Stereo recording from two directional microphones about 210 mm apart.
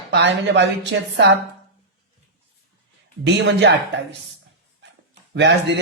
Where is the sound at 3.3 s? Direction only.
55° right (ahead or behind).